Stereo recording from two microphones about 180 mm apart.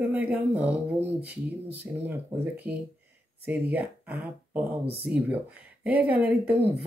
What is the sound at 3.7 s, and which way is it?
Speech, 10° right (ahead or behind).